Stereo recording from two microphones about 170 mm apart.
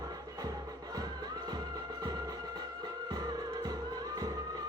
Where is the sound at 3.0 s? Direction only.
25° right (ahead or behind).